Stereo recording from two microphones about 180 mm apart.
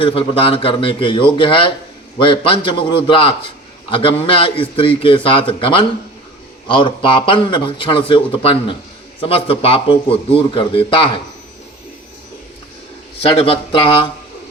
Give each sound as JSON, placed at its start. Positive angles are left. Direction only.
{"t": 0.0, "sound": "a man's voice", "side_deg": 30}
{"t": 13.3, "sound": "speech", "side_deg": 30}